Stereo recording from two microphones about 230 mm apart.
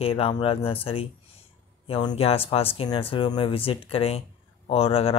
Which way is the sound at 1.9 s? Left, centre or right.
Left.